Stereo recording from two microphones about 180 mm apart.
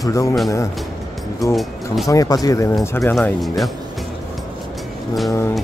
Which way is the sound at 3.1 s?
Centre (ahead or behind).